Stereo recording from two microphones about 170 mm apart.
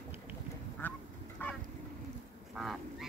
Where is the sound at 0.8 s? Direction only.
10° left (ahead or behind).